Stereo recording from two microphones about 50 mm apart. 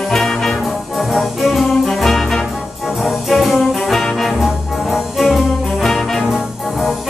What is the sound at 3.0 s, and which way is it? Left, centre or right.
Brass instrument, centre.